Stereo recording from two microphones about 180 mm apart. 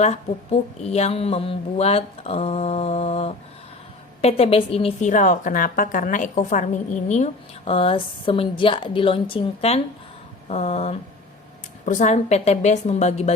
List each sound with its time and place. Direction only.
0.0 s a woman's voice: 40° left (ahead or behind)